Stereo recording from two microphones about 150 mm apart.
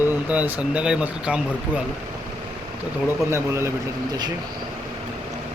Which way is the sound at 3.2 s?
20° right (ahead or behind).